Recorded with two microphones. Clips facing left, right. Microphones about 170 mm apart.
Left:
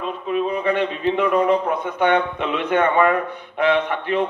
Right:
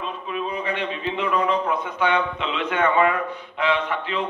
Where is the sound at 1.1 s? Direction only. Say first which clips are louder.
Left 4 dB; 50° left (ahead or behind).